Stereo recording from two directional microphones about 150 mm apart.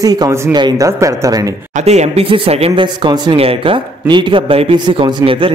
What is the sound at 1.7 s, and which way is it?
A man's voice, 50° right (ahead or behind).